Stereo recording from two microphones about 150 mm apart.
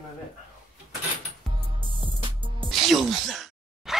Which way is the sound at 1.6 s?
35° right (ahead or behind).